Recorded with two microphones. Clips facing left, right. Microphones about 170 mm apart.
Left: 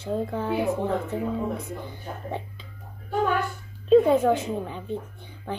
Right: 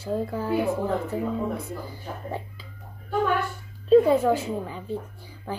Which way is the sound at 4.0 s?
10° right (ahead or behind).